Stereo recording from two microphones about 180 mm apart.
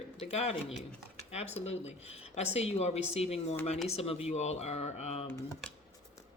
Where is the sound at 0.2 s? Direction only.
35° left (ahead or behind).